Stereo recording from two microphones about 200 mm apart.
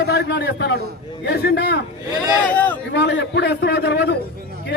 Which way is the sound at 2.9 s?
60° left (ahead or behind).